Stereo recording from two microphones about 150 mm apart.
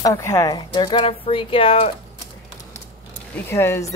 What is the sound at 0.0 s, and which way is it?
Speech, 20° left (ahead or behind).